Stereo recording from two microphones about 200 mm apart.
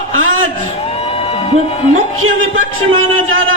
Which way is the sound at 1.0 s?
30° left (ahead or behind).